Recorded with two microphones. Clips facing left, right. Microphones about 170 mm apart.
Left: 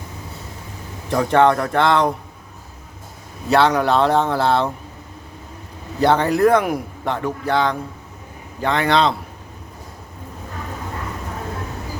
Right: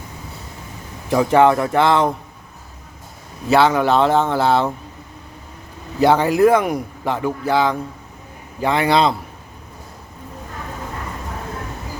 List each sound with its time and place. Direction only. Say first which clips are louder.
1.1 s speech: right 2 dB; 5° right (ahead or behind)
3.5 s speech: right 1 dB; 5° right (ahead or behind)
6.0 s a man's voice: right 2 dB; 5° right (ahead or behind)